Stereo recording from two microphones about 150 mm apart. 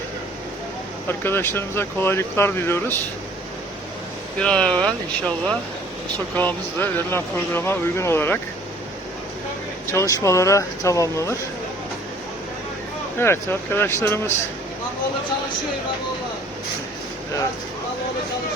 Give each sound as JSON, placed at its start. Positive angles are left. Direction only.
{"t": 1.0, "sound": "speech", "side_deg": 15}
{"t": 4.4, "sound": "speech", "side_deg": 5}
{"t": 9.8, "sound": "speech", "side_deg": 20}
{"t": 13.1, "sound": "speech", "side_deg": 15}